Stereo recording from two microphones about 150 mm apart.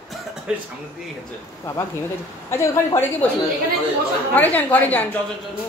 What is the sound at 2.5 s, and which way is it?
Speech, 15° left (ahead or behind).